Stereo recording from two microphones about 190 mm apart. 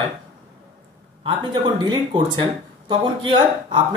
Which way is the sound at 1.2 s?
25° right (ahead or behind).